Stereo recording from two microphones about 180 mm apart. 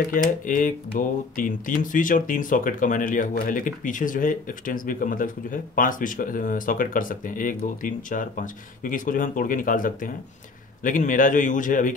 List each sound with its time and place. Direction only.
0.1 s speech: 50° left (ahead or behind)